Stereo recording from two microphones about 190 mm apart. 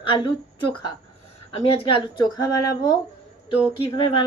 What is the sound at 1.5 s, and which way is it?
Speech, 30° left (ahead or behind).